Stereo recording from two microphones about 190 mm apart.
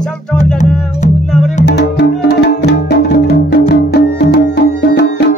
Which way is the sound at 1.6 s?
60° left (ahead or behind).